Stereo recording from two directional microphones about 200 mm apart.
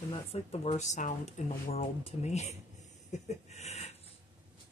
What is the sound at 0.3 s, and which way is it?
Speech, 30° left (ahead or behind).